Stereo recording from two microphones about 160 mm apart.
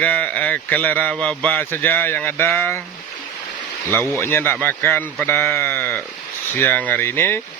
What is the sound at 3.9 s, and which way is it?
Speech, 15° left (ahead or behind).